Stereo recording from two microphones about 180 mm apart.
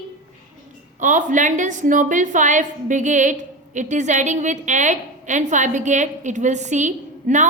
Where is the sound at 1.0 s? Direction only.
45° right (ahead or behind).